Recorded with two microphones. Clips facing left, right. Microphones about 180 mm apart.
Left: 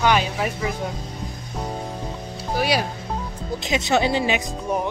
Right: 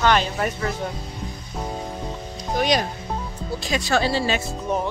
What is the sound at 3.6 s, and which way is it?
Speech, 20° left (ahead or behind).